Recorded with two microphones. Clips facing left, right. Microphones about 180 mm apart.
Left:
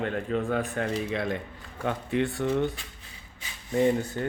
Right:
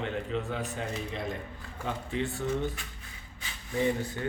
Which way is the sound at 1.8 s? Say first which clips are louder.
Left 6 dB; 60° left (ahead or behind).